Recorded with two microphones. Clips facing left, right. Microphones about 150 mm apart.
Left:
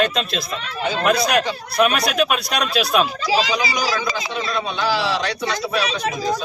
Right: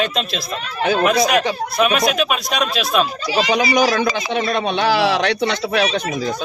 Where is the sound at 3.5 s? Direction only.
60° right (ahead or behind).